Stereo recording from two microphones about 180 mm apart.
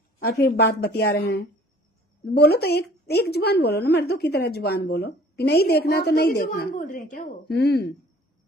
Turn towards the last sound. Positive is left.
turn(degrees=65)  # may be behind; listen again after turning